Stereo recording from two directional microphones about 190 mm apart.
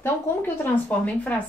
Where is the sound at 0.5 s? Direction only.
10° left (ahead or behind).